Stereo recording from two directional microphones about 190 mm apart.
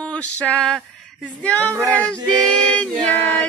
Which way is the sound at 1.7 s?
15° right (ahead or behind).